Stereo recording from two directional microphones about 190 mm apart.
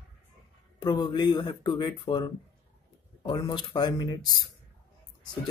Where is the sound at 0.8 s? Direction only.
20° left (ahead or behind).